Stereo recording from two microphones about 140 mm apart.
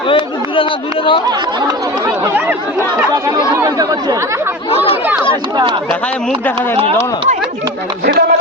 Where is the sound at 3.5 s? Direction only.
25° right (ahead or behind).